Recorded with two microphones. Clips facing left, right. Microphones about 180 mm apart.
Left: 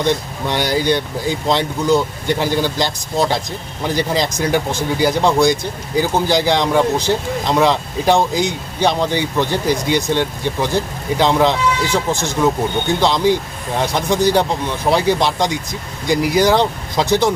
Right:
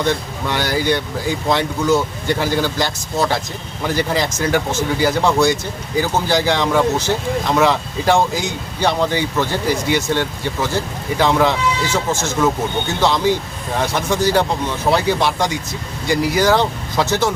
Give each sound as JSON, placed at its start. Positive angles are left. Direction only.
{"t": 0.0, "sound": "speech", "side_deg": 15}